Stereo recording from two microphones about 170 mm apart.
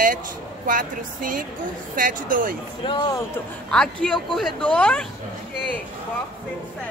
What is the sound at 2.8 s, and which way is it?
Speech, 30° left (ahead or behind).